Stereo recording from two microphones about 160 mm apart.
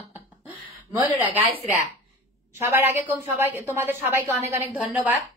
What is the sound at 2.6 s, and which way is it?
A woman's voice, 15° right (ahead or behind).